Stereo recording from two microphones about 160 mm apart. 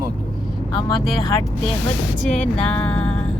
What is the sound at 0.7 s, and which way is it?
Speech, 30° left (ahead or behind).